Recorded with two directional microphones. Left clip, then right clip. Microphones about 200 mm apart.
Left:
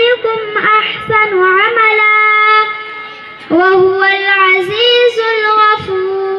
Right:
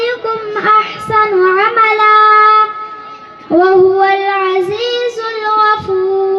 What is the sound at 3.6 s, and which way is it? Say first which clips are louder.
Child singing: right 1 dB; 25° right (ahead or behind).